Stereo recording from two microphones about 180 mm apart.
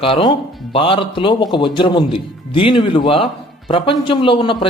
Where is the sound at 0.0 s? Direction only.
30° left (ahead or behind).